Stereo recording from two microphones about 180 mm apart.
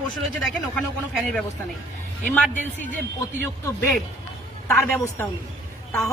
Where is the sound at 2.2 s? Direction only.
10° left (ahead or behind).